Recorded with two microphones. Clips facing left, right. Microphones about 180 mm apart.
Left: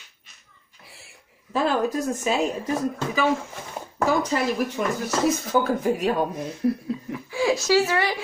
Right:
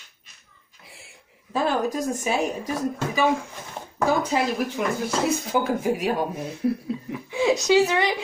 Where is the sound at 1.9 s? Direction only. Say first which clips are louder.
Left 1 dB; 15° right (ahead or behind).